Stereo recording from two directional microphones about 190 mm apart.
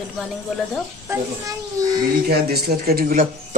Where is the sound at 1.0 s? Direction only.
15° right (ahead or behind).